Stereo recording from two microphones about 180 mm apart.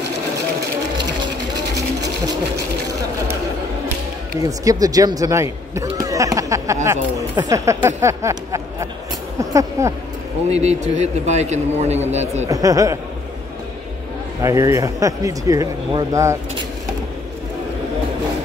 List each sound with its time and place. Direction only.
4.4 s speech: 20° right (ahead or behind)
10.5 s a man's voice: 40° right (ahead or behind)
12.4 s speech: 20° right (ahead or behind)
14.4 s speech: 15° right (ahead or behind)